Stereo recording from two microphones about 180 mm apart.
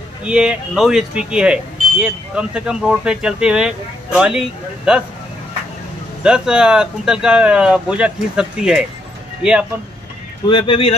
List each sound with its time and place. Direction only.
0.2 s speech: 5° right (ahead or behind)
6.2 s speech: 5° right (ahead or behind)
10.4 s speech: 25° left (ahead or behind)